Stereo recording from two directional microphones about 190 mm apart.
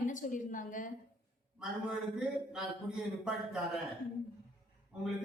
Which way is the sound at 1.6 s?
5° right (ahead or behind).